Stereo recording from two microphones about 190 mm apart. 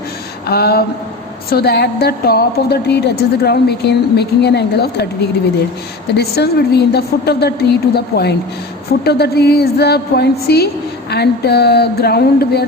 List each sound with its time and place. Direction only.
0.4 s a woman's voice: 55° left (ahead or behind)
6.1 s a woman's voice: 60° left (ahead or behind)